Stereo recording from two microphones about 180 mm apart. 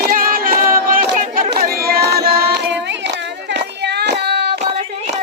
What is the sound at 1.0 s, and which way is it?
Chatter, 45° right (ahead or behind).